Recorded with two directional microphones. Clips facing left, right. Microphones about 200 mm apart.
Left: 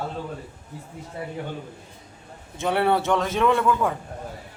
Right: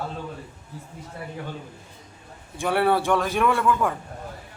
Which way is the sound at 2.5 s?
20° left (ahead or behind).